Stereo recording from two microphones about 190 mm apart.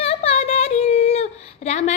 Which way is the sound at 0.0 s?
30° left (ahead or behind).